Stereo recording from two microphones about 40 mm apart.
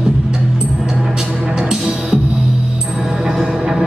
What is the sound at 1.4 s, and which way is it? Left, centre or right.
Music, right.